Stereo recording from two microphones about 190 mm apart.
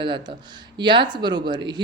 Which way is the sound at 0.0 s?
25° right (ahead or behind).